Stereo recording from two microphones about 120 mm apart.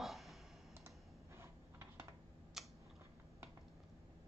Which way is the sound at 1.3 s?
20° right (ahead or behind).